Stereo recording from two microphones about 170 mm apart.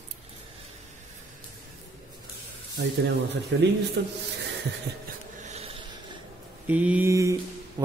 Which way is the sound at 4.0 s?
75° right (ahead or behind).